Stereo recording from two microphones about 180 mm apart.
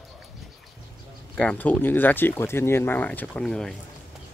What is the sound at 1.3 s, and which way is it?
Speech, 5° left (ahead or behind).